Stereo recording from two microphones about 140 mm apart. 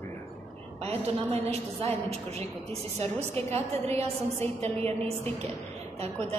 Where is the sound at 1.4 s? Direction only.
45° right (ahead or behind).